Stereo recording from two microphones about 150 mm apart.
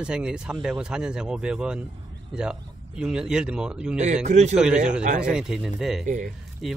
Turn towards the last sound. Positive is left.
turn(degrees=0)  # may be behind; listen again after turning